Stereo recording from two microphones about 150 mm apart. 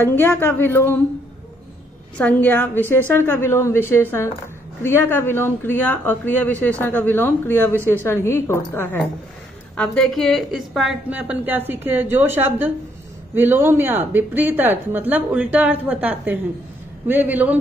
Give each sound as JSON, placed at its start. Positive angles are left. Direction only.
{"t": 0.0, "sound": "speech", "side_deg": 15}
{"t": 2.1, "sound": "speech", "side_deg": 10}
{"t": 9.8, "sound": "a woman's voice", "side_deg": 5}